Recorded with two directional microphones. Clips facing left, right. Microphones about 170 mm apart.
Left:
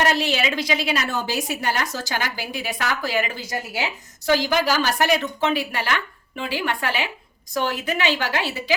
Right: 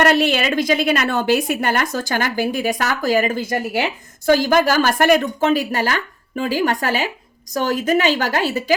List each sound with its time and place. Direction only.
0.0 s a woman's voice: 60° right (ahead or behind)